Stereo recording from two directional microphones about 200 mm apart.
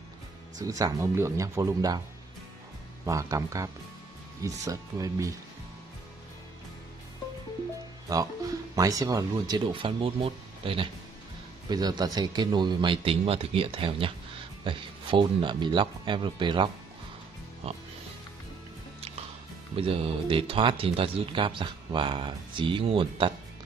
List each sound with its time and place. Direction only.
0.6 s speech: 20° right (ahead or behind)
3.1 s speech: 15° right (ahead or behind)
8.1 s speech: 20° right (ahead or behind)
19.7 s speech: 30° right (ahead or behind)